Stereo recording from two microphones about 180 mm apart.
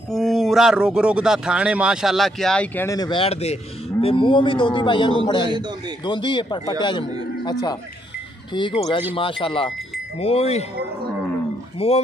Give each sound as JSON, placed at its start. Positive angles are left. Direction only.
{"t": 0.1, "sound": "a man's voice", "side_deg": 0}
{"t": 8.5, "sound": "a man's voice", "side_deg": 25}
{"t": 11.8, "sound": "speech", "side_deg": 35}